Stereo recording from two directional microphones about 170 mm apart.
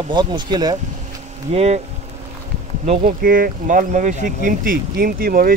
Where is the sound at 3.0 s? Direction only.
55° right (ahead or behind).